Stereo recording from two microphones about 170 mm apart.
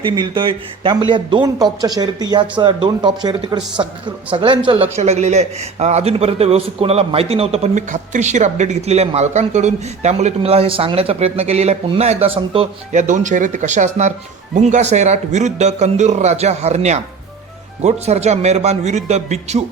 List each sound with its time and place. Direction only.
0.0 s a man's voice: 30° right (ahead or behind)